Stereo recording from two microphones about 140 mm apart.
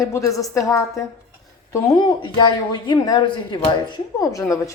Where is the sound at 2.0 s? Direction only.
35° left (ahead or behind).